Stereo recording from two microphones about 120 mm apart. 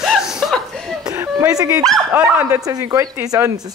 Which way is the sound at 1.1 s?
30° right (ahead or behind).